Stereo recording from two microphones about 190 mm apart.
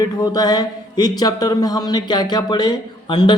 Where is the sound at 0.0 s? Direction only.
20° left (ahead or behind).